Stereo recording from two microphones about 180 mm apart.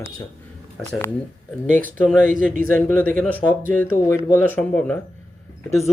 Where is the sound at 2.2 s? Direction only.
50° right (ahead or behind).